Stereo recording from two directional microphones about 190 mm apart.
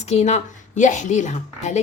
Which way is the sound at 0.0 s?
35° left (ahead or behind).